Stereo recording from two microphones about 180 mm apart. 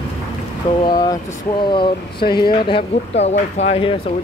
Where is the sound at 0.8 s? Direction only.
25° left (ahead or behind).